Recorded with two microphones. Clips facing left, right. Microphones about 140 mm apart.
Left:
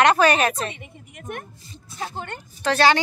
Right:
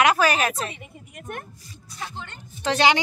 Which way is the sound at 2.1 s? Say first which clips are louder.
Left 6 dB; 55° left (ahead or behind).